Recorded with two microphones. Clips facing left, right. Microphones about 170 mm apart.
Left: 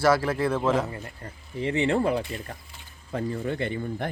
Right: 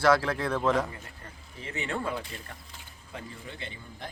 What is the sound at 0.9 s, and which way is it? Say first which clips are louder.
Speech: left 7 dB; 35° left (ahead or behind).